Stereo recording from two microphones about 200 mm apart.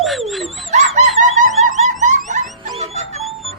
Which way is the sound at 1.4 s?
40° right (ahead or behind).